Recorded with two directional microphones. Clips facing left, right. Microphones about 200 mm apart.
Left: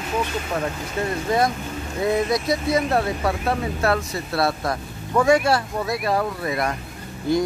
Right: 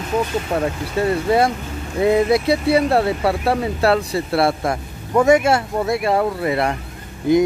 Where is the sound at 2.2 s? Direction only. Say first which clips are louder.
Right 5 dB; 30° right (ahead or behind).